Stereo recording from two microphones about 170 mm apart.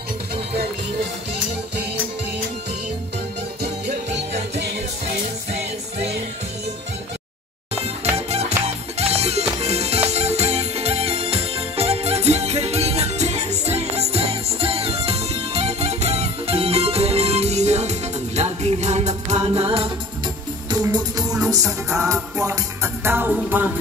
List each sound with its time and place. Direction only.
8.3 s music: 40° right (ahead or behind)
21.5 s music: 20° right (ahead or behind)